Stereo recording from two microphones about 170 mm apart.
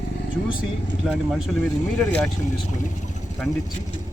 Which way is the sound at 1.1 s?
Centre (ahead or behind).